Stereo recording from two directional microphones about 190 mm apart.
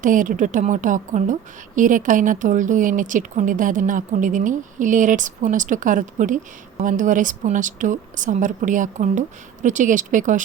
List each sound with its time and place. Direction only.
0.0 s a woman's voice: 45° right (ahead or behind)